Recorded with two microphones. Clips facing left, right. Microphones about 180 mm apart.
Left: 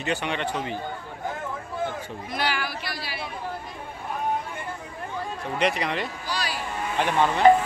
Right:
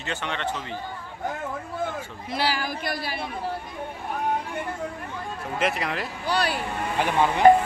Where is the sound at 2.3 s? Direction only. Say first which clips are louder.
Right 2 dB; 35° right (ahead or behind); by 3.3 s 50° right (ahead or behind).